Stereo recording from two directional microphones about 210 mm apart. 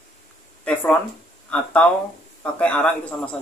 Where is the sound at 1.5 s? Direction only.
5° left (ahead or behind).